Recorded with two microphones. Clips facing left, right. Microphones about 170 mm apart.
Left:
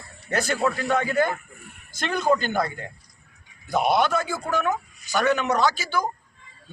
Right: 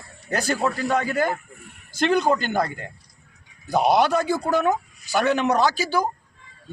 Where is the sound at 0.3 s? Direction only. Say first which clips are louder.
Even; 35° right (ahead or behind).